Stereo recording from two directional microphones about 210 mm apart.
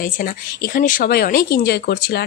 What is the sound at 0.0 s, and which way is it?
A woman's voice, 40° left (ahead or behind).